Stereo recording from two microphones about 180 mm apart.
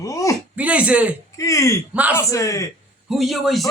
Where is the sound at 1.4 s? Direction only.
15° left (ahead or behind).